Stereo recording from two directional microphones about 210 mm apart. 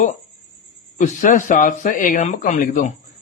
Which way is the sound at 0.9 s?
35° left (ahead or behind).